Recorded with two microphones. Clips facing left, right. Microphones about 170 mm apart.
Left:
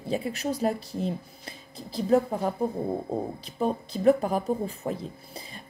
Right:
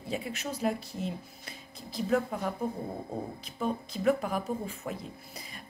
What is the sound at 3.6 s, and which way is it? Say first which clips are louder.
A woman's voice: left 5 dB; 35° left (ahead or behind).